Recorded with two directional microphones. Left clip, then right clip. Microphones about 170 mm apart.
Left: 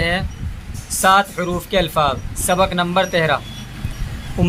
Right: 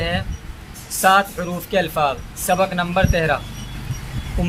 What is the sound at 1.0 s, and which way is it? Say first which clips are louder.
A man's voice: left 1 dB; 20° left (ahead or behind).